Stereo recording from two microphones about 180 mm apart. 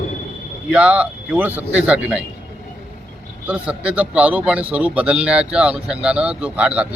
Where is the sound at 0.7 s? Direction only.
5° right (ahead or behind).